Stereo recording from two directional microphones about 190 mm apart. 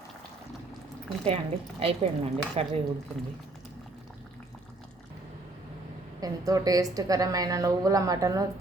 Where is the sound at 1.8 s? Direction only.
30° right (ahead or behind).